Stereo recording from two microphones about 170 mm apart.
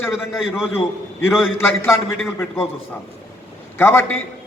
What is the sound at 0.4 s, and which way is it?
Speech, 5° right (ahead or behind).